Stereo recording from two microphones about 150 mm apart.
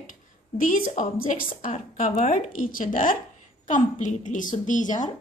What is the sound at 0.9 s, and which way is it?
A woman's voice, 60° left (ahead or behind).